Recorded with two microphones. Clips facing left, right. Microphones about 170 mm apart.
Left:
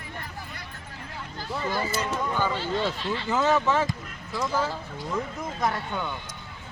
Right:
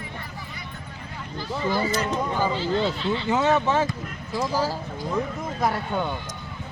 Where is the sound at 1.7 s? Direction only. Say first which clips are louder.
Right 4 dB; 15° right (ahead or behind).